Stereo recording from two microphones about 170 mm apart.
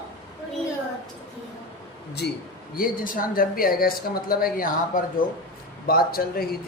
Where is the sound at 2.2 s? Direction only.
75° left (ahead or behind).